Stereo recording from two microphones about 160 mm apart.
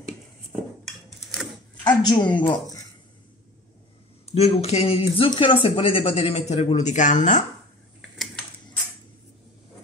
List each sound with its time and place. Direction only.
0.8 s dishes: centre (ahead or behind)
1.9 s a woman's voice: 25° left (ahead or behind)
4.3 s speech: 40° left (ahead or behind)